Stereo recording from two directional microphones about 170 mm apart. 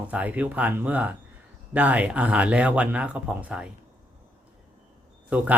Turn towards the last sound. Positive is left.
turn(degrees=-10)  # may be behind; listen again after turning